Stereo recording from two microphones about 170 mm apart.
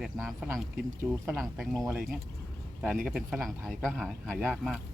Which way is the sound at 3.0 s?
5° right (ahead or behind).